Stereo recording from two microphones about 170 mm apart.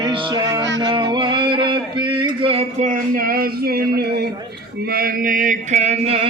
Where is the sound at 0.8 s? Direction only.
25° right (ahead or behind); by 4.3 s 70° right (ahead or behind).